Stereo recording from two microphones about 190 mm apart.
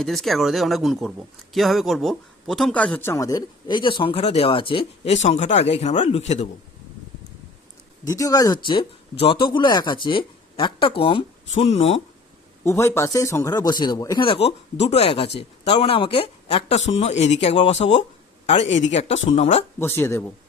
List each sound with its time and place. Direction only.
0.0 s a man's voice: centre (ahead or behind); by 6.5 s 35° left (ahead or behind)
8.0 s a man's voice: 20° left (ahead or behind)
12.6 s a man's voice: 15° left (ahead or behind); by 17.8 s 35° left (ahead or behind)
18.9 s speech: 35° left (ahead or behind)
19.8 s speech: 10° left (ahead or behind)